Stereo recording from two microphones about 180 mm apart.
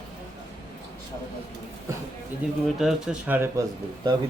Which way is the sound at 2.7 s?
5° right (ahead or behind).